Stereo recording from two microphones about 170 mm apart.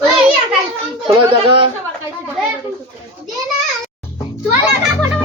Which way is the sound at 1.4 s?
30° right (ahead or behind).